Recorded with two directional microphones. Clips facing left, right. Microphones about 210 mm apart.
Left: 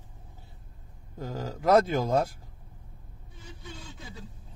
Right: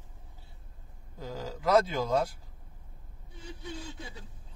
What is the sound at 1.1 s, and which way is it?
Speech, 50° left (ahead or behind).